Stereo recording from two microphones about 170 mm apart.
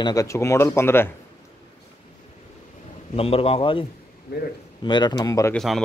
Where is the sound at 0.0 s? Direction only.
20° left (ahead or behind).